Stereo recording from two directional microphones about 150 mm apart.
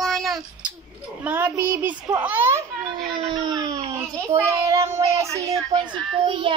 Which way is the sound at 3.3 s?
30° right (ahead or behind).